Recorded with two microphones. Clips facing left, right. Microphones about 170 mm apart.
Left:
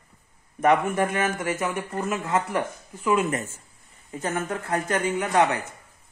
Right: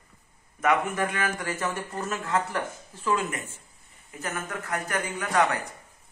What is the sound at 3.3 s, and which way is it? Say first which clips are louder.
Speech: left 7 dB; 45° left (ahead or behind).